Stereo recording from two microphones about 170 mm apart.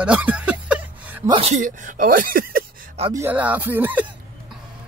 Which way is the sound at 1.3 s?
40° right (ahead or behind).